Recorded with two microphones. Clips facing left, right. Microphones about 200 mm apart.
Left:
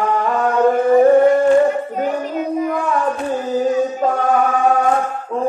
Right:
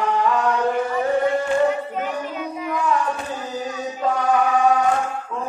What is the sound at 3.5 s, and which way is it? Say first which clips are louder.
Music: left 11 dB; 50° left (ahead or behind).